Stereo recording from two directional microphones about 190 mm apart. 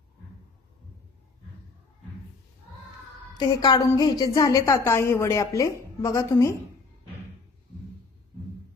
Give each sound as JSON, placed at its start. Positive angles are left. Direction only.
{"t": 3.3, "sound": "a woman's voice", "side_deg": 20}